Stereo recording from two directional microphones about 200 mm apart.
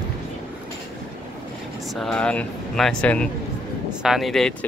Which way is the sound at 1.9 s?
5° left (ahead or behind).